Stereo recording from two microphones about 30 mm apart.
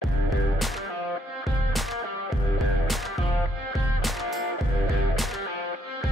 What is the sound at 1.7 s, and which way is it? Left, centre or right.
Music, centre.